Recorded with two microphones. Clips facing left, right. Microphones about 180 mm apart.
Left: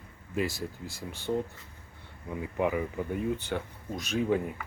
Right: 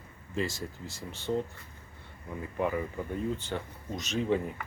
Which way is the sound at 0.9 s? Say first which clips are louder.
Left 2 dB; 60° left (ahead or behind).